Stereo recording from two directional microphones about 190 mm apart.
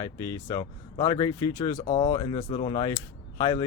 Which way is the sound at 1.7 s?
35° left (ahead or behind).